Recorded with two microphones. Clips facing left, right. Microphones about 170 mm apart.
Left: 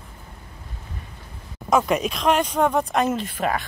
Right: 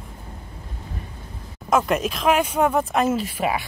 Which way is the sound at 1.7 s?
Centre (ahead or behind).